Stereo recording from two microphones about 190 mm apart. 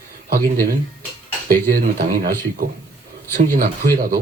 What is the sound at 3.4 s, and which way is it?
Speech, 45° right (ahead or behind).